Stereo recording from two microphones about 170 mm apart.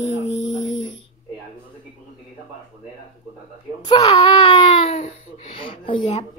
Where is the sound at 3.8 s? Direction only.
25° left (ahead or behind).